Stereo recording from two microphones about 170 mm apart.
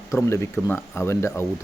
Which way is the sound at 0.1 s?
15° left (ahead or behind).